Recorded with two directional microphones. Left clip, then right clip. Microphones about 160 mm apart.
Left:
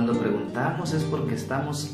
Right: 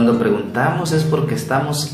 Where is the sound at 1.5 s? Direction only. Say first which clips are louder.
Right 11 dB; 5° right (ahead or behind).